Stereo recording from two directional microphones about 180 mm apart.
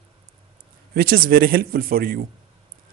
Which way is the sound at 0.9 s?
55° right (ahead or behind).